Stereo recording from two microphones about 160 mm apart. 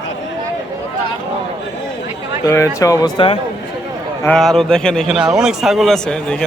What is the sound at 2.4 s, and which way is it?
Speech, 20° left (ahead or behind).